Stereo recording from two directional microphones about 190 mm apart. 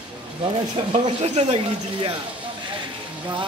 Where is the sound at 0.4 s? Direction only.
30° right (ahead or behind).